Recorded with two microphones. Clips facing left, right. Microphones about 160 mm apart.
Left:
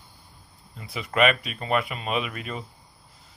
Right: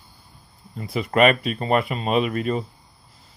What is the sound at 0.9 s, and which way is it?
Speech, 45° right (ahead or behind).